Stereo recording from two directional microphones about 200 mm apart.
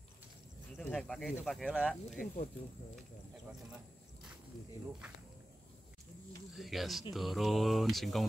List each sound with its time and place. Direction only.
0.7 s speech: 5° left (ahead or behind)
1.4 s mantra: centre (ahead or behind)
2.0 s speech: 35° left (ahead or behind)
6.5 s mantra: centre (ahead or behind)